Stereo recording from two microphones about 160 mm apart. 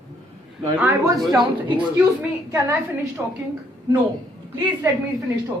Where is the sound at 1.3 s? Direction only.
30° right (ahead or behind).